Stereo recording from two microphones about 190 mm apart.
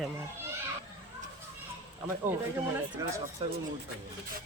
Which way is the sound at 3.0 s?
20° right (ahead or behind).